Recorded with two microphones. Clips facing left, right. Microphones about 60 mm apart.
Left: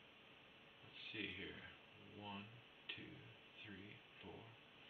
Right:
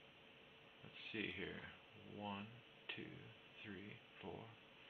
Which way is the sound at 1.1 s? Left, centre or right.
Centre.